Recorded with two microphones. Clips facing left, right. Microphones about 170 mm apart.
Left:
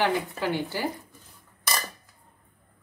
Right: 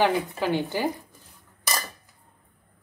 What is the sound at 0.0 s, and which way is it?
Speech, 20° right (ahead or behind).